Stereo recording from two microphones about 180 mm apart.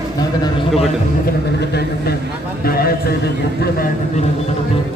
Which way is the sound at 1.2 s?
65° left (ahead or behind).